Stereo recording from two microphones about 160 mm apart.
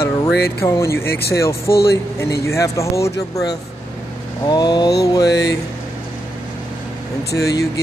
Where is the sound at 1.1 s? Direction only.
80° left.